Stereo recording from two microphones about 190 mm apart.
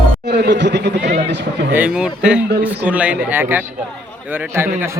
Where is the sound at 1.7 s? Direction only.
5° right (ahead or behind).